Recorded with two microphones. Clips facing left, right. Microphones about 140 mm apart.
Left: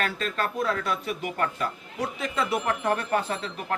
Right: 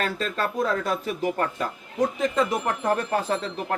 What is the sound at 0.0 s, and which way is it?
A man's voice, 35° right (ahead or behind).